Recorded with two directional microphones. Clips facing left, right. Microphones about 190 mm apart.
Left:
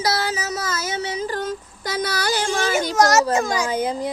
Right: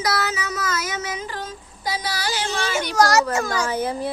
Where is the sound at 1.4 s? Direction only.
55° left (ahead or behind).